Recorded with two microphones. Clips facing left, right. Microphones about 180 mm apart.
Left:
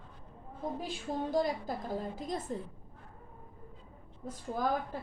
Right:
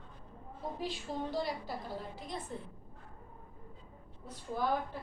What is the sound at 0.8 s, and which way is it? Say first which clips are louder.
A woman's voice: even; 45° left (ahead or behind).